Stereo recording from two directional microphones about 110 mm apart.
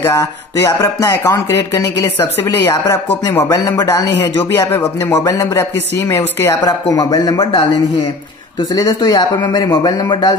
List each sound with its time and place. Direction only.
0.0 s speech: 25° left (ahead or behind)
2.7 s speech: 35° left (ahead or behind)
8.7 s speech: 35° left (ahead or behind)